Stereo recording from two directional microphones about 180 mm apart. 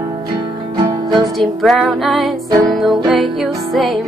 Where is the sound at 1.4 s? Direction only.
Centre (ahead or behind).